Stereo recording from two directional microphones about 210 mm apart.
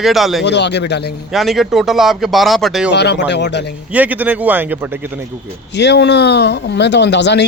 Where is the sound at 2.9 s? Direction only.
55° left (ahead or behind).